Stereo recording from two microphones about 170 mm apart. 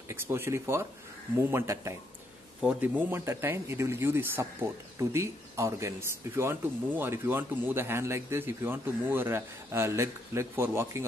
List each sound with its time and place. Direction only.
0.1 s speech: 15° right (ahead or behind)